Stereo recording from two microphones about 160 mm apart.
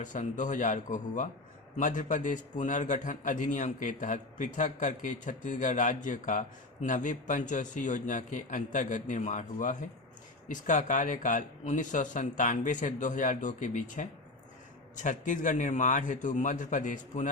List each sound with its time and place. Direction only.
0.0 s a man's voice: 50° left (ahead or behind)